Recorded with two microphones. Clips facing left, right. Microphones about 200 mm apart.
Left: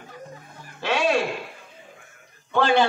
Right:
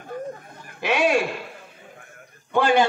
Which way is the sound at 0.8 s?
15° right (ahead or behind).